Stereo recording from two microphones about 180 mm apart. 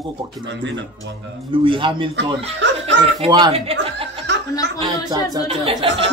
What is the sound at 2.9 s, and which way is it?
Laughter, 80° right.